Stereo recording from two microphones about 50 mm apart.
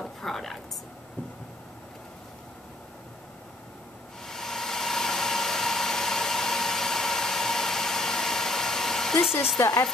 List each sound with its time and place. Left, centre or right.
0.0 s a sound: centre
4.3 s engine: centre
9.6 s speech: left